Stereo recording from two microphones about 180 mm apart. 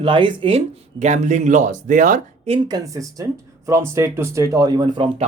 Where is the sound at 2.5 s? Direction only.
20° right (ahead or behind).